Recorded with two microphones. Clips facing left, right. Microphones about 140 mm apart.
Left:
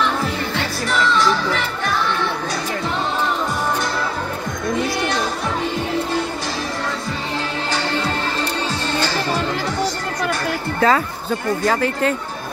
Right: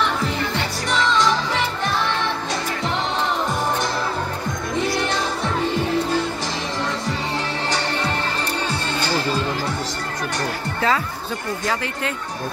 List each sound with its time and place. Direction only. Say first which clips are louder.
0.8 s music: left 1 dB; 20° right (ahead or behind)
10.8 s speech: left 5 dB; 45° left (ahead or behind)